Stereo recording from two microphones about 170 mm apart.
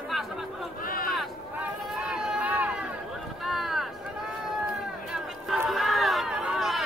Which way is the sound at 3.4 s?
Centre (ahead or behind).